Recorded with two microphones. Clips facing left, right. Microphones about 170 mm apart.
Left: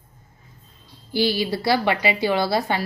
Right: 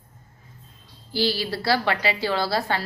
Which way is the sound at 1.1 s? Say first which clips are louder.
Left 3 dB; 15° left (ahead or behind).